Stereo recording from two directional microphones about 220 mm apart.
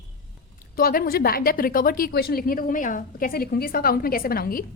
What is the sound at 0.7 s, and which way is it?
A woman's voice, 40° left (ahead or behind).